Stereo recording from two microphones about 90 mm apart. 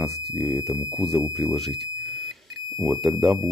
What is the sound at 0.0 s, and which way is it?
Speech, 5° left (ahead or behind).